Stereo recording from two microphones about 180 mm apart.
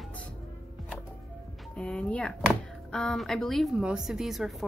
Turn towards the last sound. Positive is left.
turn(degrees=0)  # may be behind; listen again after turning